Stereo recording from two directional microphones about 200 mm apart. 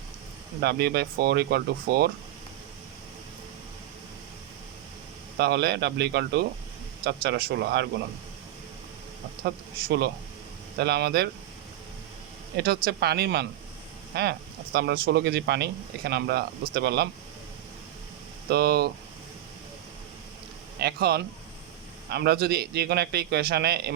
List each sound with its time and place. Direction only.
0.6 s speech: 55° right (ahead or behind)
5.4 s speech: 55° right (ahead or behind)
10.8 s speech: 55° right (ahead or behind)
12.5 s speech: 50° right (ahead or behind)
18.4 s speech: 55° right (ahead or behind)
20.7 s speech: 55° right (ahead or behind)